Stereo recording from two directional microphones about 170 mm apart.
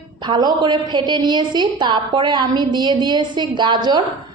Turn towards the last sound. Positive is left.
turn(degrees=-25)  # may be behind; listen again after turning